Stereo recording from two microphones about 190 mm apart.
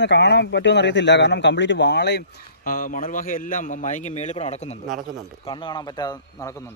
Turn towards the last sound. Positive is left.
turn(degrees=20)  # may be behind; listen again after turning